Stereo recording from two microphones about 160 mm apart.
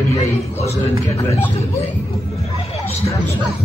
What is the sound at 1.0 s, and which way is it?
Speech, 15° left (ahead or behind).